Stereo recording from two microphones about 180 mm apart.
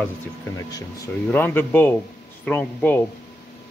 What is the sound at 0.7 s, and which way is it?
Speech, 20° left (ahead or behind).